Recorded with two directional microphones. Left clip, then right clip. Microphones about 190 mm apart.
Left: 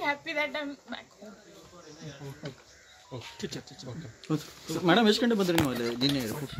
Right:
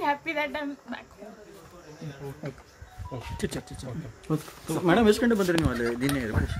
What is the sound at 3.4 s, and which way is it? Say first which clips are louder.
Speech: right 6 dB; 20° right (ahead or behind).